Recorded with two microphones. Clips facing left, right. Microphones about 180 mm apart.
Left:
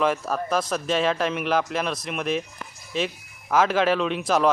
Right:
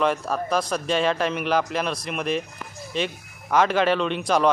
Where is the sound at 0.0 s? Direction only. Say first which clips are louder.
Even; centre (ahead or behind).